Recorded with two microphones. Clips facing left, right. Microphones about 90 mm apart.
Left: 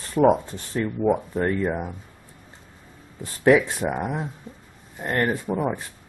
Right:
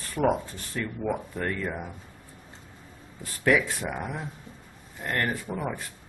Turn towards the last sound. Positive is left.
turn(degrees=25)  # may be behind; listen again after turning